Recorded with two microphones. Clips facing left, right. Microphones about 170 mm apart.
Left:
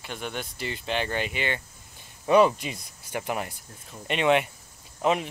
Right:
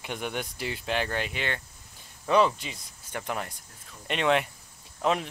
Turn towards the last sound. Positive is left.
turn(degrees=5)  # may be behind; listen again after turning